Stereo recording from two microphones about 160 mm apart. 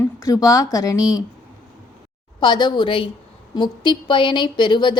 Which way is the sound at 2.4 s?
30° left (ahead or behind).